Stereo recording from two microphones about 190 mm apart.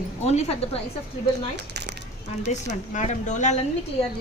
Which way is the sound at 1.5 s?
65° right (ahead or behind).